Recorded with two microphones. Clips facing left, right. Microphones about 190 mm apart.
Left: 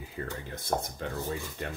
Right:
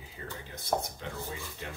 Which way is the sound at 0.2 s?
50° left (ahead or behind).